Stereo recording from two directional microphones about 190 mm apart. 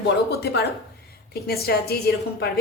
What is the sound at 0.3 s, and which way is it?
A woman's voice, 60° left (ahead or behind).